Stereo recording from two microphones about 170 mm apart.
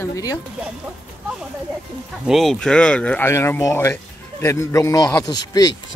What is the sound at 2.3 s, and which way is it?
Speech, centre (ahead or behind).